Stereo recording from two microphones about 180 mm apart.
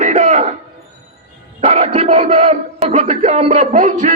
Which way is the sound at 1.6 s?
35° right (ahead or behind).